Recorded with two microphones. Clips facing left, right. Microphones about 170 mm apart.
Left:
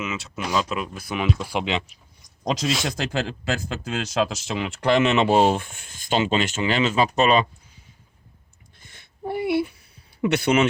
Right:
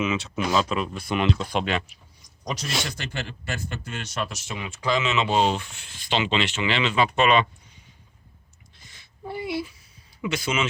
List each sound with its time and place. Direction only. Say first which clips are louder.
0.0 s speech: right 4 dB; centre (ahead or behind)
2.8 s speech: left 7 dB; 90° left; by 7.4 s 35° left (ahead or behind)
8.7 s a sound: left 2 dB; 55° left (ahead or behind)
10.2 s speech: left 7 dB; 65° left (ahead or behind)